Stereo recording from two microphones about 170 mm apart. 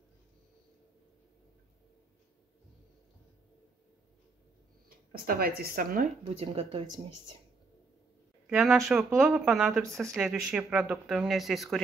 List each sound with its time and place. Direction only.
4.8 s speech: 60° right (ahead or behind)
6.4 s speech: 35° right (ahead or behind)
8.5 s speech: centre (ahead or behind)